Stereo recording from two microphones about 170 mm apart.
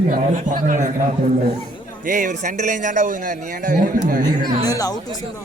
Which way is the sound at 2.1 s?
50° right (ahead or behind).